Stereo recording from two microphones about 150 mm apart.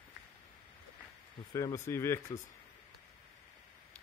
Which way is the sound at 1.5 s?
20° left (ahead or behind).